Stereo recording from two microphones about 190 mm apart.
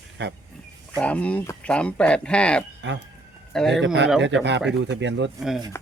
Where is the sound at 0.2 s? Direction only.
65° right (ahead or behind).